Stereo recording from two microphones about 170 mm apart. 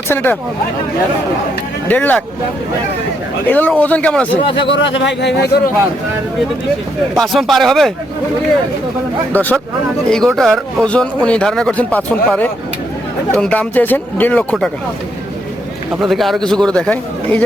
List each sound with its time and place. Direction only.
0.1 s speech: 10° left (ahead or behind)
1.9 s speech: 10° left (ahead or behind)
3.4 s speech: 10° left (ahead or behind)
4.6 s speech: 90° left; by 5.7 s 70° left (ahead or behind)
7.2 s speech: centre (ahead or behind)
9.3 s speech: 10° left (ahead or behind)
16.0 s speech: centre (ahead or behind)